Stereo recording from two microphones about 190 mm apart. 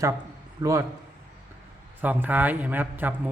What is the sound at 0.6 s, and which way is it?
Speech, 15° right (ahead or behind).